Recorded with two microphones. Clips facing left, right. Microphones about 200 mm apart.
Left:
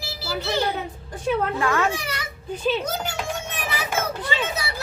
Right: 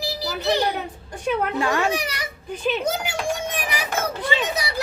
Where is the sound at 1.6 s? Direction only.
15° right (ahead or behind).